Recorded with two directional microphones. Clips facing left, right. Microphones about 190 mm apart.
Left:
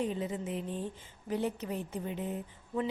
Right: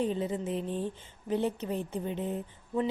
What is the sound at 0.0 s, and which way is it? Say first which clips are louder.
A woman's voice: right 3 dB; 30° right (ahead or behind).